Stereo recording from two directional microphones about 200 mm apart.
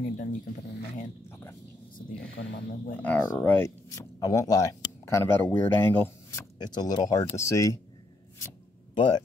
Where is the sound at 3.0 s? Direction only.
5° left (ahead or behind).